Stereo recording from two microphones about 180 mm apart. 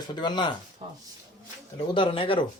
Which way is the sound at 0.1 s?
25° left (ahead or behind).